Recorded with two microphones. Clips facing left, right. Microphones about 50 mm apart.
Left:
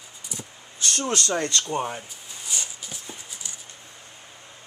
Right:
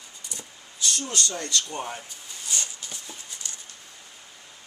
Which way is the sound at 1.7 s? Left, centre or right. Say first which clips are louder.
Left 5 dB; centre.